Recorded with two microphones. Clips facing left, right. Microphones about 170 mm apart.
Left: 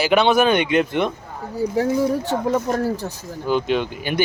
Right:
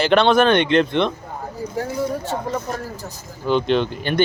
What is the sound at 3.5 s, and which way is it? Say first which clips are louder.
Speech: right 2 dB; 5° left (ahead or behind).